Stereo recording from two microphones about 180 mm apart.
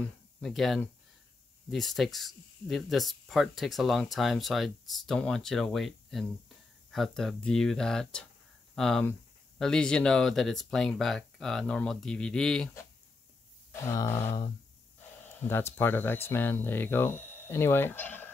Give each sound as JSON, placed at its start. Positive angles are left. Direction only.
{"t": 0.4, "sound": "speech", "side_deg": 0}
{"t": 13.7, "sound": "a sound", "side_deg": 15}
{"t": 15.7, "sound": "speech", "side_deg": 10}